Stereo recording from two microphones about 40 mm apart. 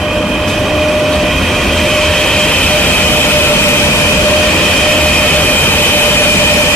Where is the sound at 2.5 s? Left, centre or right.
Left.